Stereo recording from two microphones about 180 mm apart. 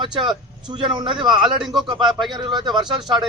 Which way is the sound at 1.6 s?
Centre (ahead or behind).